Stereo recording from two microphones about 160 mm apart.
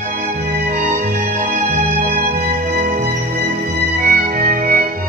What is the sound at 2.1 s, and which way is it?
Music, 75° right (ahead or behind).